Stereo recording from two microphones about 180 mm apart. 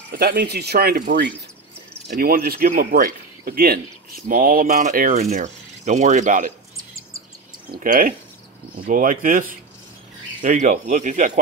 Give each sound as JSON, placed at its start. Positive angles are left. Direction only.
{"t": 0.1, "sound": "speech", "side_deg": -55}
{"t": 5.3, "sound": "speech", "side_deg": -40}
{"t": 7.8, "sound": "speech", "side_deg": -50}